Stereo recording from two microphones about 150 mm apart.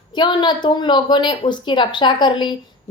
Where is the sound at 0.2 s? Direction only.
30° left (ahead or behind).